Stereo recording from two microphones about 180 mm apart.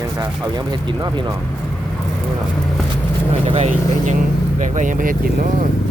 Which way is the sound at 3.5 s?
40° right (ahead or behind).